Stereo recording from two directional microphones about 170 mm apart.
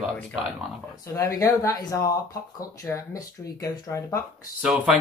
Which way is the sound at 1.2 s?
20° left (ahead or behind).